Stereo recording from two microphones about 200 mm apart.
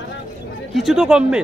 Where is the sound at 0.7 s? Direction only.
Centre (ahead or behind).